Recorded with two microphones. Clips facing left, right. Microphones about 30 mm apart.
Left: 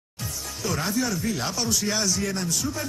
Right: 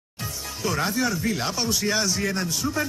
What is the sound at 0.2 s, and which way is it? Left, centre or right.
Speech, centre.